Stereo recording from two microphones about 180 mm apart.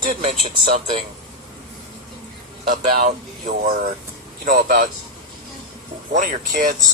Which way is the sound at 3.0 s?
45° right (ahead or behind).